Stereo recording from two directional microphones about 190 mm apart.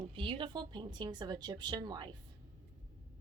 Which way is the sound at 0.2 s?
25° right (ahead or behind).